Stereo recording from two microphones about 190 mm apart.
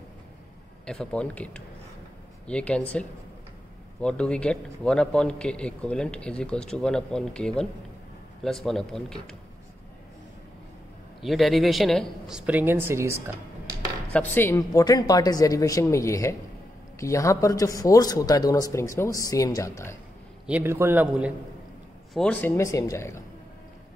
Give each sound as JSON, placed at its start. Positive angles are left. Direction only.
{"t": 0.8, "sound": "a man's voice", "side_deg": 5}
{"t": 11.2, "sound": "a man's voice", "side_deg": 0}
{"t": 14.1, "sound": "speech", "side_deg": 10}
{"t": 20.4, "sound": "a man's voice", "side_deg": -10}
{"t": 22.1, "sound": "speech", "side_deg": 5}